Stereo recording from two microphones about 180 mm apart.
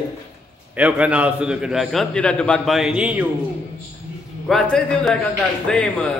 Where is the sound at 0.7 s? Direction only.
5° right (ahead or behind).